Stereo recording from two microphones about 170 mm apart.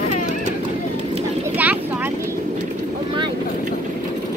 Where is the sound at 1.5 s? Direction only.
10° right (ahead or behind).